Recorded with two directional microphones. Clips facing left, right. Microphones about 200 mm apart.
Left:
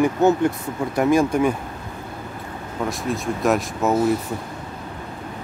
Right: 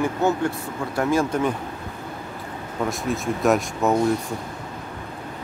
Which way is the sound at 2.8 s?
Centre (ahead or behind).